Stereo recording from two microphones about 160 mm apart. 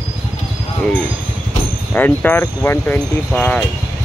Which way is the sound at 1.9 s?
10° left (ahead or behind).